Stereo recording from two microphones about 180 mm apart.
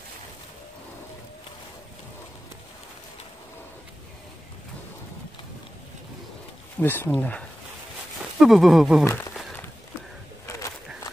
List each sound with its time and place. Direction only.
6.8 s speech: 10° left (ahead or behind)
9.0 s speech: 15° left (ahead or behind)
10.4 s a sound: 15° left (ahead or behind)